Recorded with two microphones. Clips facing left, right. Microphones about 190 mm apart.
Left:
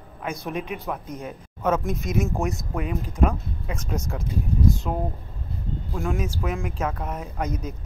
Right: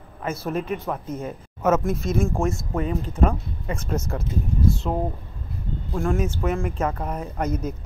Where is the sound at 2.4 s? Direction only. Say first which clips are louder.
Right 3 dB; 20° left (ahead or behind).